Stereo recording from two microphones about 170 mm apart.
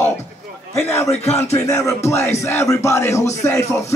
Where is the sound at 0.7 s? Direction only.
15° left (ahead or behind).